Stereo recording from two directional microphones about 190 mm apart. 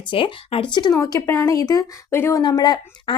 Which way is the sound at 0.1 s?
25° left (ahead or behind).